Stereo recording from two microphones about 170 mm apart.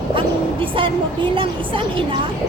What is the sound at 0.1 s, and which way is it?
A woman's voice, 30° right (ahead or behind).